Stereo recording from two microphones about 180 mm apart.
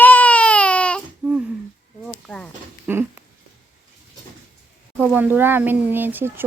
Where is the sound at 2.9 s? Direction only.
10° right (ahead or behind).